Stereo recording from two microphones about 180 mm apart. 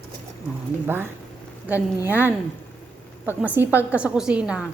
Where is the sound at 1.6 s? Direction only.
10° right (ahead or behind).